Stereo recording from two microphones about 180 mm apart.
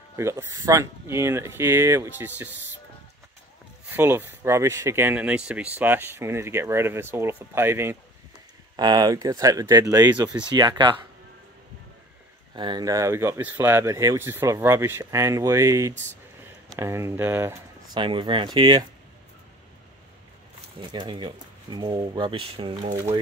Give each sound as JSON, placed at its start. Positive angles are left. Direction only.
{"t": 0.1, "sound": "speech", "side_deg": -15}
{"t": 3.9, "sound": "speech", "side_deg": -10}
{"t": 12.5, "sound": "speech", "side_deg": -25}
{"t": 17.9, "sound": "speech", "side_deg": -25}
{"t": 20.9, "sound": "speech", "side_deg": -25}